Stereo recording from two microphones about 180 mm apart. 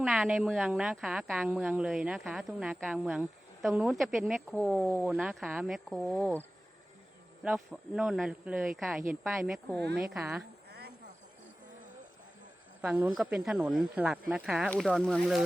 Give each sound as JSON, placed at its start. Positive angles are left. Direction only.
{"t": 0.0, "sound": "speech", "side_deg": 0}
{"t": 5.0, "sound": "speech", "side_deg": -5}
{"t": 7.4, "sound": "speech", "side_deg": -5}
{"t": 10.7, "sound": "cricket", "side_deg": -65}
{"t": 12.8, "sound": "speech", "side_deg": -5}